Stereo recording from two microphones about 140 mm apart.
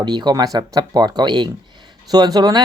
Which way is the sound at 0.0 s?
30° right (ahead or behind).